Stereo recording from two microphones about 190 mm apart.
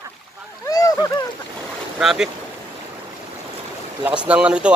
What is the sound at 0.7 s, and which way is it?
Boat, 20° left (ahead or behind).